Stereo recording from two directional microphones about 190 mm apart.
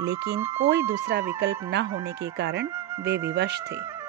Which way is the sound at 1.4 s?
65° right (ahead or behind).